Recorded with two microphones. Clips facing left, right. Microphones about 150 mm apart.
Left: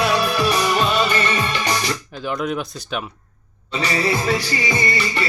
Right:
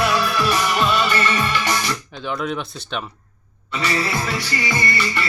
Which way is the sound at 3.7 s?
20° left (ahead or behind).